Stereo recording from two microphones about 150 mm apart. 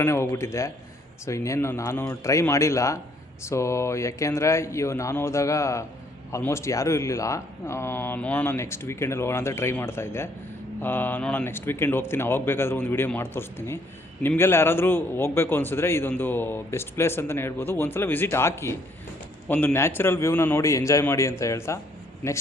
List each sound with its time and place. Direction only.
0.0 s a man's voice: 20° left (ahead or behind)